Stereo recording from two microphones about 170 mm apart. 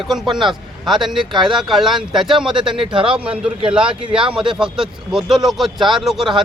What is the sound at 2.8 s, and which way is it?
Speech, 30° right (ahead or behind).